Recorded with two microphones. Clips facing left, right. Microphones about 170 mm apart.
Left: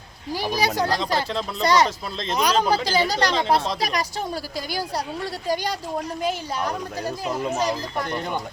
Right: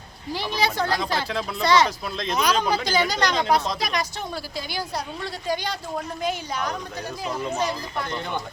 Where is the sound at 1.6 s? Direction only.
40° left (ahead or behind).